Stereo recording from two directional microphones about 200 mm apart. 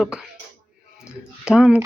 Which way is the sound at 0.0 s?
5° right (ahead or behind).